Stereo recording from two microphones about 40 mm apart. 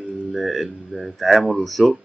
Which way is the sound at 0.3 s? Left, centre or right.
Centre.